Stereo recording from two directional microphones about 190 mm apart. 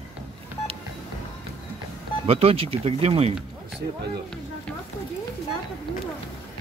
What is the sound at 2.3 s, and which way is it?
Speech, 30° right (ahead or behind).